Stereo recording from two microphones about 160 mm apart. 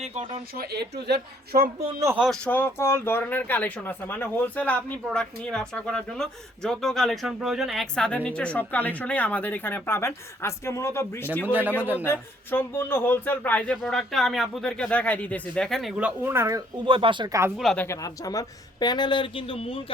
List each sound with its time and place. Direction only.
0.0 s speech: 40° right (ahead or behind)
0.5 s a woman's voice: 75° right (ahead or behind)
2.1 s speech: 5° right (ahead or behind)
2.4 s speech: 10° left (ahead or behind)
11.4 s speech: 10° right (ahead or behind)
12.0 s speech: 15° left (ahead or behind); by 17.5 s 20° right (ahead or behind)
17.7 s speech: 15° left (ahead or behind); by 19.8 s 35° left (ahead or behind)